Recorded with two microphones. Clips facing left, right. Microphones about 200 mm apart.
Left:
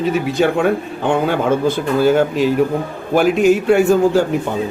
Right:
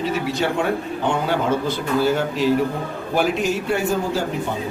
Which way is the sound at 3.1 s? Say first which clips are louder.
Left 8 dB; 55° left (ahead or behind).